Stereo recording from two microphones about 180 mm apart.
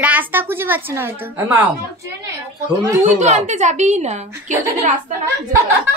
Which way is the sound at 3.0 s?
40° right (ahead or behind).